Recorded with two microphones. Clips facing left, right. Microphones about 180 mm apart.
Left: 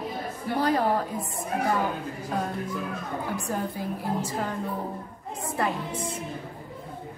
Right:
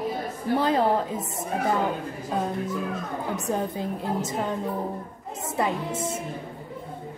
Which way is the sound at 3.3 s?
20° right (ahead or behind).